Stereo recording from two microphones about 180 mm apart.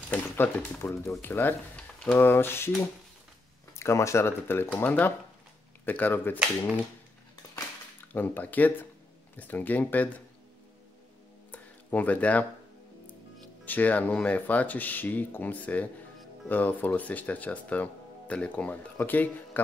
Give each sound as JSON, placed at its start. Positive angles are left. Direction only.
{"t": 0.1, "sound": "speech", "side_deg": 10}
{"t": 3.7, "sound": "speech", "side_deg": 15}
{"t": 8.1, "sound": "speech", "side_deg": 10}
{"t": 11.5, "sound": "a sound", "side_deg": 10}
{"t": 13.7, "sound": "speech", "side_deg": 10}